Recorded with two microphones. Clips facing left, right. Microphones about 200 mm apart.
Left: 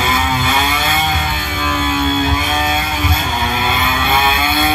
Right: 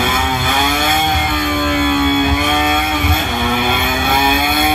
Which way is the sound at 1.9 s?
55° right (ahead or behind).